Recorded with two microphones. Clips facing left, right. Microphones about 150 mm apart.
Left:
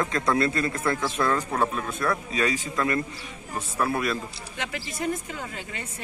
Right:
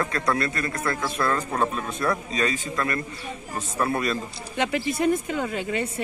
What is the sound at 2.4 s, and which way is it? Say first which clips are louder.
Speech: left 1 dB; 15° left (ahead or behind).